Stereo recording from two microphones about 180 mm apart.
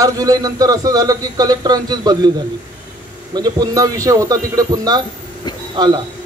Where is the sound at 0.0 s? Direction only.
20° right (ahead or behind).